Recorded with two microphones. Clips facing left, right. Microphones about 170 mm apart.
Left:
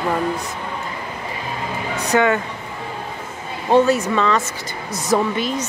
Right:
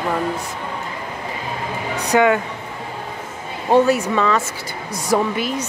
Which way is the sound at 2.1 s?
10° right (ahead or behind).